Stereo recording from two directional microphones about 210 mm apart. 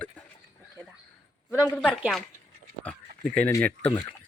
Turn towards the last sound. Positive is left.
turn(degrees=5)  # may be behind; listen again after turning